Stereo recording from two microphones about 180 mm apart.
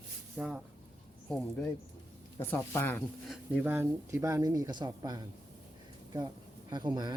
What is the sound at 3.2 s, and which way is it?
Speech, 10° right (ahead or behind).